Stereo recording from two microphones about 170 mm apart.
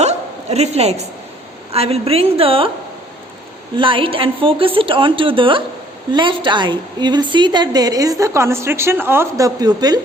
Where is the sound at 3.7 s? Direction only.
30° right (ahead or behind).